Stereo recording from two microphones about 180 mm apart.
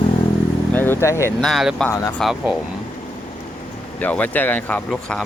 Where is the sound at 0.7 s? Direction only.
10° left (ahead or behind).